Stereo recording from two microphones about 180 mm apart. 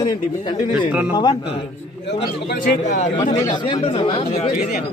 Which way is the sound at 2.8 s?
45° left (ahead or behind).